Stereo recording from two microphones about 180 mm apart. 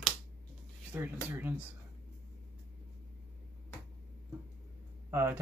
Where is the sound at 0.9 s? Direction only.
10° right (ahead or behind).